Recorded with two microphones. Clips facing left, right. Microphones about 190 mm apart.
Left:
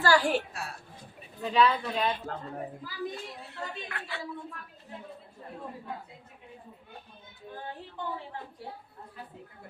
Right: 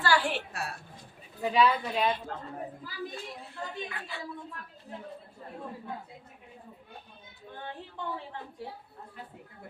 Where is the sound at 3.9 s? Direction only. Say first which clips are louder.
Left 1 dB; 70° left (ahead or behind).